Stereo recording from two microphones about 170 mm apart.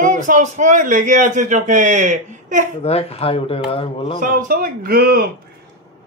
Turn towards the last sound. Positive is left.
turn(degrees=-65)  # may be behind; listen again after turning